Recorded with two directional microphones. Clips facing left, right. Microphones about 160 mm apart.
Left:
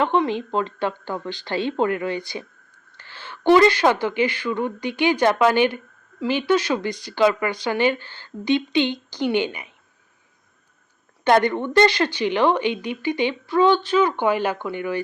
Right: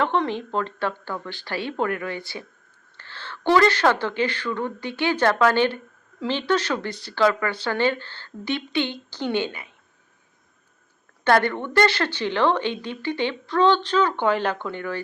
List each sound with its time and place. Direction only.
0.0 s a woman's voice: 15° left (ahead or behind)
11.2 s a woman's voice: 20° left (ahead or behind)